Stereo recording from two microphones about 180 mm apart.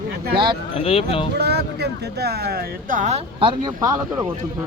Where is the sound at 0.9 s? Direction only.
30° left (ahead or behind).